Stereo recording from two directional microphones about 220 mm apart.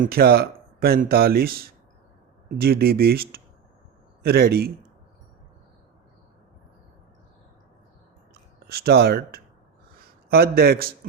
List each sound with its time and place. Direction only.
0.0 s speech: 45° right (ahead or behind)
8.3 s a sound: 45° right (ahead or behind)
10.2 s speech: 45° right (ahead or behind)